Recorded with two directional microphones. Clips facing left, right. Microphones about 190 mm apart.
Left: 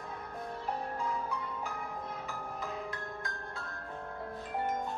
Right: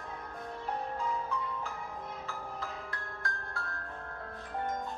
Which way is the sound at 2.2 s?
15° left (ahead or behind).